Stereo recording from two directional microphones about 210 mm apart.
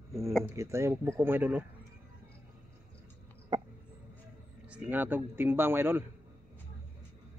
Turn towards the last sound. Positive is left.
turn(degrees=-10)  # may be behind; listen again after turning